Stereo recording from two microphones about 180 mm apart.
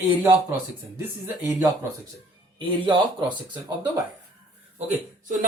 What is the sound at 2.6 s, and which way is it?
Speech, 25° right (ahead or behind).